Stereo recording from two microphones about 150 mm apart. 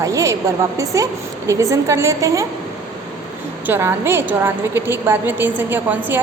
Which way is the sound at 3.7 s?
15° right (ahead or behind).